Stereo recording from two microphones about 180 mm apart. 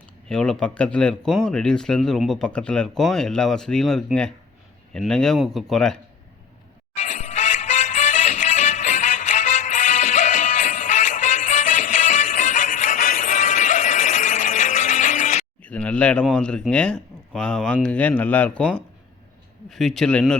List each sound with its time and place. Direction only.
0.3 s speech: 5° left (ahead or behind)
6.9 s music: 40° left (ahead or behind)
15.6 s a man's voice: 5° left (ahead or behind)